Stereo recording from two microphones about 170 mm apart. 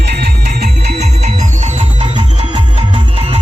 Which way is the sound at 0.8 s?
40° right (ahead or behind).